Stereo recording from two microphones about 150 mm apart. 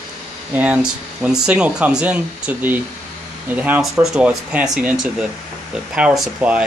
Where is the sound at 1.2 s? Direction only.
5° right (ahead or behind).